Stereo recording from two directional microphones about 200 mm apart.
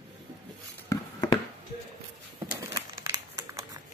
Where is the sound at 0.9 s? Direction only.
20° left (ahead or behind).